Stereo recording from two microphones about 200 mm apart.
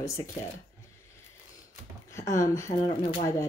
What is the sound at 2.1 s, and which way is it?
Speech, 15° left (ahead or behind).